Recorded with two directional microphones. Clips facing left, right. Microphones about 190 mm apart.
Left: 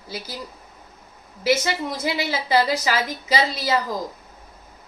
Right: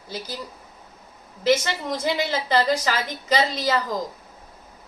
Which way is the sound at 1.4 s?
10° left (ahead or behind).